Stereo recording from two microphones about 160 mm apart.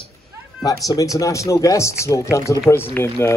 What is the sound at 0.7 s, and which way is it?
Speech, 20° left (ahead or behind).